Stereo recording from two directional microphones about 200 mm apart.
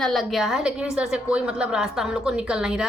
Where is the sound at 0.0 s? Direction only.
Centre (ahead or behind).